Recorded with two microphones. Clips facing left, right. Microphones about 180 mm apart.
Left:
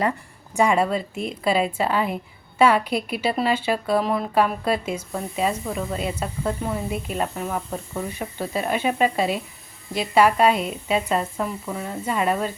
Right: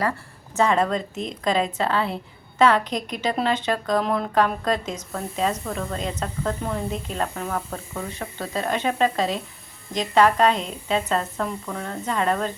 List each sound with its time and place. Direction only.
0.5 s a woman's voice: 10° left (ahead or behind)